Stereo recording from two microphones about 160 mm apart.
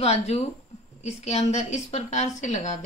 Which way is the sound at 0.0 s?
40° left (ahead or behind).